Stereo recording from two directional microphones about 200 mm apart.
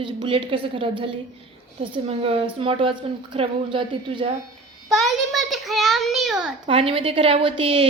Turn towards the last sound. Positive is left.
turn(degrees=-25)  # may be behind; listen again after turning